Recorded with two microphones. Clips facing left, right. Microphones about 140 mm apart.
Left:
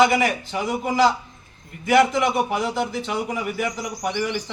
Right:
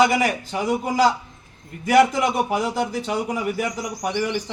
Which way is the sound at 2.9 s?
40° right (ahead or behind).